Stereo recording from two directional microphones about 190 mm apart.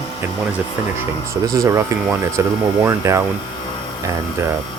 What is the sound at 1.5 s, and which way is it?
Speech, 15° right (ahead or behind).